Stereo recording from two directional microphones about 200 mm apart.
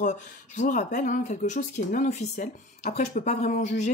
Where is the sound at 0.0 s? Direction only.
40° left (ahead or behind).